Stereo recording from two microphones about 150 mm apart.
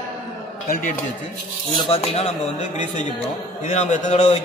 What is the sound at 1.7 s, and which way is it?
A man's voice, 40° left (ahead or behind).